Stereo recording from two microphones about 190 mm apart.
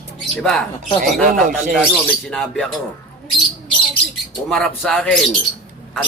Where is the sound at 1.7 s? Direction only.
5° left (ahead or behind).